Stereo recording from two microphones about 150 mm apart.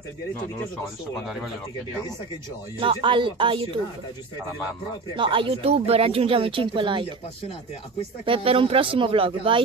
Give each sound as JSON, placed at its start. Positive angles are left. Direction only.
{"t": 2.8, "sound": "speech", "side_deg": -35}
{"t": 5.1, "sound": "speech", "side_deg": -35}
{"t": 8.3, "sound": "speech", "side_deg": -40}